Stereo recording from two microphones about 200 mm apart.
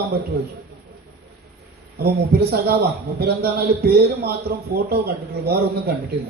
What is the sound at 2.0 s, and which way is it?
Speech, 50° right (ahead or behind).